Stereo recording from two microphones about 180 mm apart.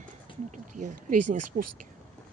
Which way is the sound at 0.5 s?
45° right (ahead or behind).